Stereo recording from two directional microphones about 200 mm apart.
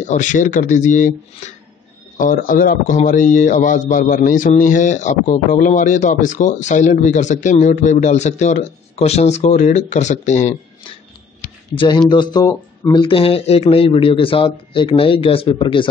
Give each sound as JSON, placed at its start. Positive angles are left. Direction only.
{"t": 0.0, "sound": "speech", "side_deg": 40}
{"t": 2.1, "sound": "speech", "side_deg": 40}
{"t": 11.7, "sound": "speech", "side_deg": 25}